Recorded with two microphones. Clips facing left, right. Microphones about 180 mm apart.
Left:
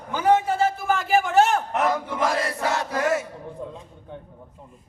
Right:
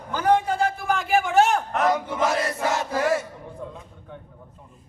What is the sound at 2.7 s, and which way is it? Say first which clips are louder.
Crowd: even; 10° right (ahead or behind).